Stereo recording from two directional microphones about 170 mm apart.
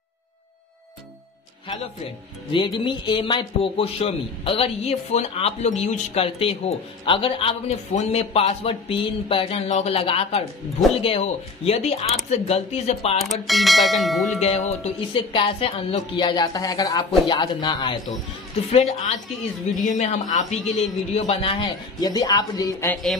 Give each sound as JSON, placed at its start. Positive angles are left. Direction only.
{"t": 2.5, "sound": "a man's voice", "side_deg": 30}
{"t": 13.5, "sound": "speech", "side_deg": 0}
{"t": 14.4, "sound": "speech", "side_deg": 35}
{"t": 18.7, "sound": "a man's voice", "side_deg": 40}